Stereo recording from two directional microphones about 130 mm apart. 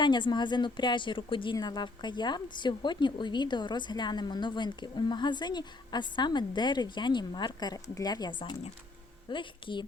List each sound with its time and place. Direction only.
0.0 s a woman's voice: 35° left (ahead or behind)